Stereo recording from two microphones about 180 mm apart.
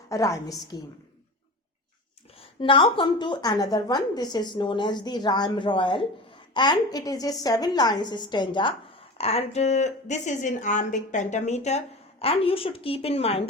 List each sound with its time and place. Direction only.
0.1 s a woman's voice: 15° left (ahead or behind)
2.4 s a woman's voice: 30° left (ahead or behind)